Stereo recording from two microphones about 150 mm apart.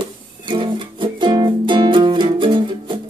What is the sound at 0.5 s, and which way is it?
Music, 35° right (ahead or behind).